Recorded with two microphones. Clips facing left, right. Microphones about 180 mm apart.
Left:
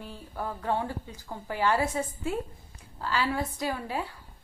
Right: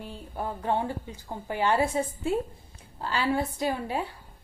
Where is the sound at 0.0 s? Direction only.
25° right (ahead or behind).